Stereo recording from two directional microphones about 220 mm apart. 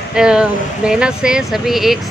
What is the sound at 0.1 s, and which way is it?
Speech, 5° right (ahead or behind).